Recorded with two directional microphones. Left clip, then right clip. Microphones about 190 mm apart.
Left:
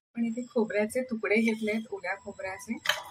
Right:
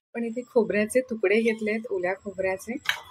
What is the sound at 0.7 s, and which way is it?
Speech, 45° right (ahead or behind).